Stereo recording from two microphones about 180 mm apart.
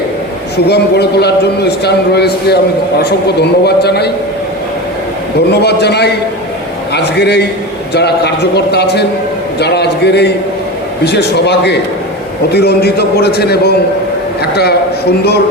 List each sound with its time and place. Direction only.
0.5 s a man's voice: 65° left (ahead or behind)
5.5 s a man's voice: 65° left (ahead or behind)